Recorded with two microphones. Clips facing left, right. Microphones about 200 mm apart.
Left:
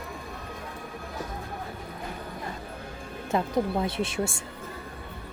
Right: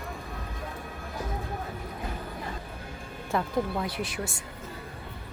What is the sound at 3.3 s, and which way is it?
Speech, 20° left (ahead or behind).